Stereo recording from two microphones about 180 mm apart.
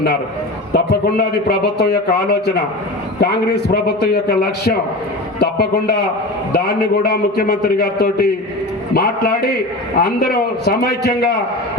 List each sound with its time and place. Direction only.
0.7 s a man's voice: 60° left (ahead or behind)